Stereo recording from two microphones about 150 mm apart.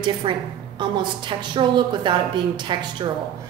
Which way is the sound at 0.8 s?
30° right (ahead or behind).